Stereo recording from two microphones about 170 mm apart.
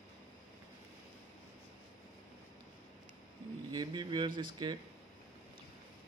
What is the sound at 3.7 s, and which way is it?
A man's voice, 25° right (ahead or behind).